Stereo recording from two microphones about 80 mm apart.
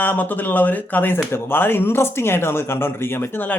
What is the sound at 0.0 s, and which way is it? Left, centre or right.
Speech, left.